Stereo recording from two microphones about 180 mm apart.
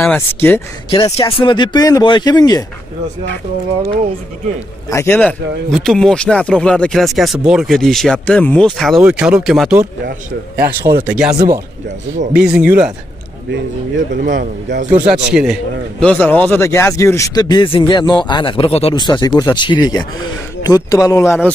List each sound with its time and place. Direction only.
0.0 s speech: 10° left (ahead or behind)
0.8 s speech: 20° left (ahead or behind)
4.8 s a man's voice: 15° left (ahead or behind)
5.1 s speech: 5° left (ahead or behind)
10.6 s speech: 55° right (ahead or behind)
11.1 s speech: 5° right (ahead or behind)
11.3 s speech: 20° right (ahead or behind)
12.4 s speech: 5° right (ahead or behind)
13.5 s speech: 75° right (ahead or behind)
14.2 s speech: 45° right (ahead or behind)
15.0 s speech: 5° right (ahead or behind)
16.0 s speech: 10° left (ahead or behind)